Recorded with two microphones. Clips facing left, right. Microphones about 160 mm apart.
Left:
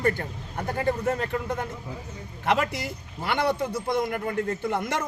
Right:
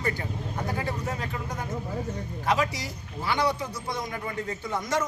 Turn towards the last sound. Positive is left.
turn(degrees=60)  # may be behind; listen again after turning